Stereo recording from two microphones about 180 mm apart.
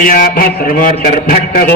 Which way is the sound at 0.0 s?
55° left (ahead or behind).